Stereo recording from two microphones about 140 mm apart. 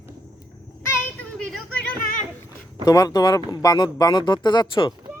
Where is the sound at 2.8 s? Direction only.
25° left (ahead or behind).